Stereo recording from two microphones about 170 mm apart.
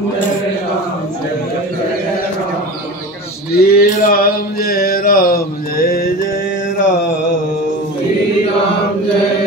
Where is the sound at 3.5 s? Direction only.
65° left (ahead or behind).